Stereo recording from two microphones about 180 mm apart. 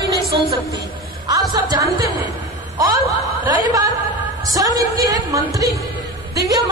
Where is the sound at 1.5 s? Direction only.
20° right (ahead or behind).